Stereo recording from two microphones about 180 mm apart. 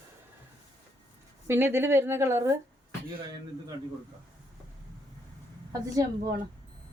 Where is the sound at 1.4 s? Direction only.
15° right (ahead or behind).